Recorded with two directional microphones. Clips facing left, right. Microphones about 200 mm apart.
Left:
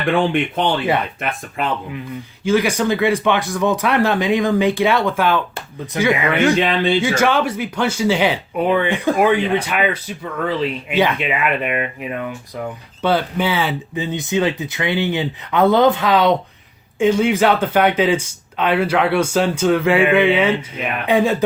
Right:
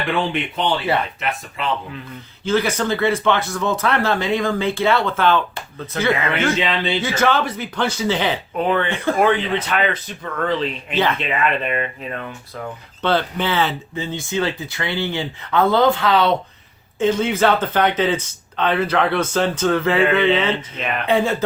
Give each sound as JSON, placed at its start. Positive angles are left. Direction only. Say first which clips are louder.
{"t": 1.2, "sound": "speech", "louder": "left 2 dB", "side_deg": 50}
{"t": 2.4, "sound": "speech", "louder": "left 3 dB", "side_deg": 15}
{"t": 6.6, "sound": "speech", "louder": "left 4 dB", "side_deg": 50}
{"t": 7.0, "sound": "speech", "louder": "left 2 dB", "side_deg": 10}